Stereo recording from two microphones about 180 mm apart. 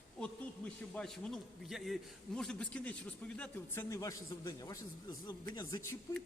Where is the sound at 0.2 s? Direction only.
5° left (ahead or behind).